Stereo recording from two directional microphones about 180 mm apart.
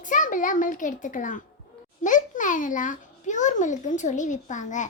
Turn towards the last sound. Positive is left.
turn(degrees=45)  # may be behind; listen again after turning